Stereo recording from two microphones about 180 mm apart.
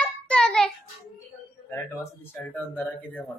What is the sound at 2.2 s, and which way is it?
Speech, 10° left (ahead or behind).